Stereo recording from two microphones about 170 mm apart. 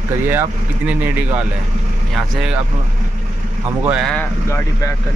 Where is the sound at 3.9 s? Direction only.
5° left (ahead or behind).